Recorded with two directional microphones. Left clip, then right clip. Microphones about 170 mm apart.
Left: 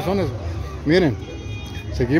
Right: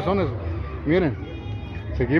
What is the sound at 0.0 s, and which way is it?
Speech, 25° left (ahead or behind).